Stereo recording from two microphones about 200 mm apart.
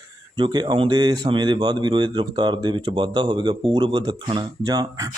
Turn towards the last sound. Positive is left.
turn(degrees=-20)  # may be behind; listen again after turning